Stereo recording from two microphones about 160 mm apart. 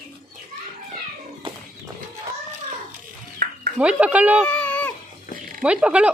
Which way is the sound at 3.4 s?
70° right (ahead or behind).